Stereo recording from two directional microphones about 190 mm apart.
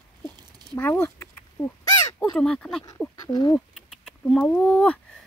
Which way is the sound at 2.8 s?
20° left (ahead or behind).